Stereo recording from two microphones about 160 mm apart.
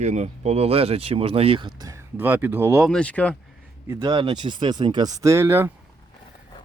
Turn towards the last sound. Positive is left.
turn(degrees=-15)  # may be behind; listen again after turning